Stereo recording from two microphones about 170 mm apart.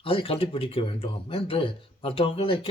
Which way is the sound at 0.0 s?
30° left (ahead or behind).